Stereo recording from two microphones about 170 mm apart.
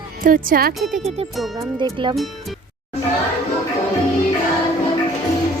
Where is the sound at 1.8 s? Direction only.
30° right (ahead or behind).